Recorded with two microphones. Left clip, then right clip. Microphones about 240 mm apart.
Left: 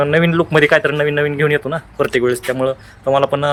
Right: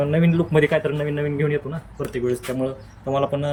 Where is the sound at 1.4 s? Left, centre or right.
Left.